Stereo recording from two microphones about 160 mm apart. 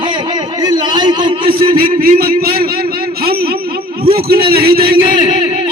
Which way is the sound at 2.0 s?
65° right (ahead or behind).